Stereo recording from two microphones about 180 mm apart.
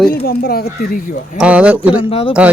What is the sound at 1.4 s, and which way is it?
Speech, 5° right (ahead or behind).